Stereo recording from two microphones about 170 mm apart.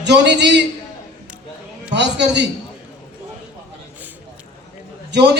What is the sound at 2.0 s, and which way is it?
Speech, 90° right.